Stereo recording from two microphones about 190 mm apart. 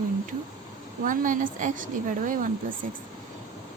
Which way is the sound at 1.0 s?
45° right (ahead or behind).